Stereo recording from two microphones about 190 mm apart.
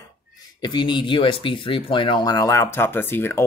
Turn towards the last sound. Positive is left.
turn(degrees=10)  # may be behind; listen again after turning